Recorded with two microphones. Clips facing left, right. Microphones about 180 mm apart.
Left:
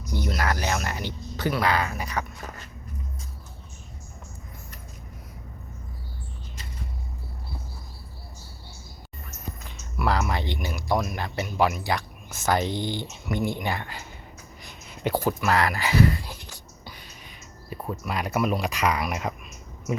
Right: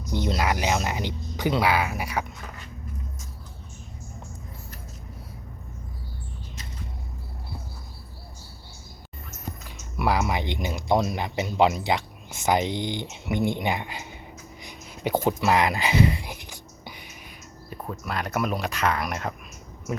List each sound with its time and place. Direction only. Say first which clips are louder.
0.1 s speech: right 2 dB; 20° right (ahead or behind)
10.0 s speech: right 1 dB; 15° right (ahead or behind)
14.6 s a sound: left 1 dB; 15° right (ahead or behind)
17.7 s speech: left 2 dB; 5° left (ahead or behind)